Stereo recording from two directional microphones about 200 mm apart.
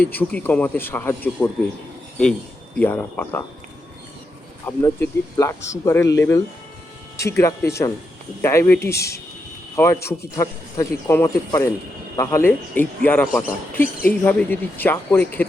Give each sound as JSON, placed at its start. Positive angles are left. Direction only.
{"t": 0.0, "sound": "a man's voice", "side_deg": 10}
{"t": 2.7, "sound": "a man's voice", "side_deg": 10}
{"t": 4.6, "sound": "a man's voice", "side_deg": 15}